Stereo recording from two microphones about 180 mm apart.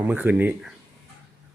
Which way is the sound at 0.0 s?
10° right (ahead or behind).